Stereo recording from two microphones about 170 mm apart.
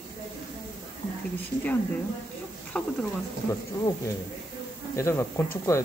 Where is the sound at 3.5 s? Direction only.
20° left (ahead or behind).